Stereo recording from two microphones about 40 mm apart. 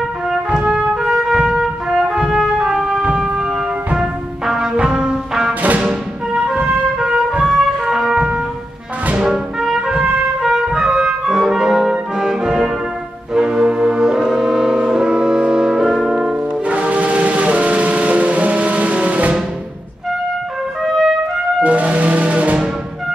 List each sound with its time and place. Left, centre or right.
0.5 s music: right
4.6 s music: centre
5.5 s music: right
6.3 s music: centre
9.8 s trumpet: centre
10.6 s music: centre
12.3 s brass instrument: centre
16.6 s music: right
20.8 s trumpet: centre
21.6 s music: right